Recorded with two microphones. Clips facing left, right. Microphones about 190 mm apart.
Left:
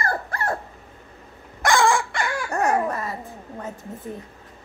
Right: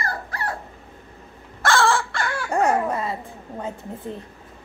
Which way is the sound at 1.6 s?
15° left (ahead or behind).